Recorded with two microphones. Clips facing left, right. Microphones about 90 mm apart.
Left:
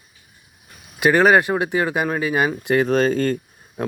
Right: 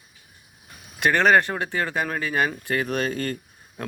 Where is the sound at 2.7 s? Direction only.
30° left (ahead or behind).